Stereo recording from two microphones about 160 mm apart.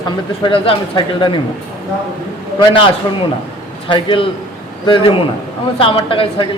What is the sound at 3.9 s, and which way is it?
A man's voice, 30° left (ahead or behind).